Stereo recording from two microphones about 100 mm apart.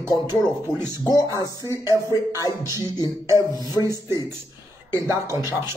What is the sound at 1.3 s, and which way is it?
Speech, 35° left (ahead or behind).